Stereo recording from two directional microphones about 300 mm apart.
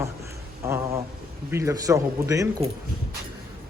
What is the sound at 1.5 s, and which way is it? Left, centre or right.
Speech, centre.